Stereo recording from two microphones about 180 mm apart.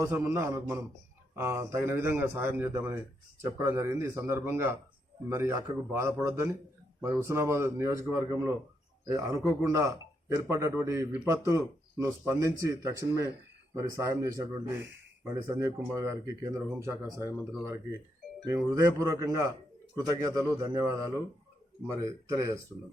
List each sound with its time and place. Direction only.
0.0 s speech: 15° right (ahead or behind)
18.4 s a man's voice: 20° right (ahead or behind)
22.0 s speech: 15° right (ahead or behind)